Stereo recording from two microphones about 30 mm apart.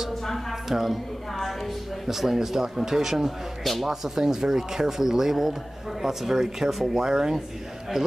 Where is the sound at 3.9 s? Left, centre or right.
Centre.